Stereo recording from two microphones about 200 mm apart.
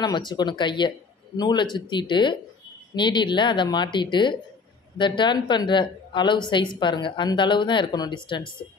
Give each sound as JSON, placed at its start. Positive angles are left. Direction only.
{"t": 0.0, "sound": "a woman's voice", "side_deg": 20}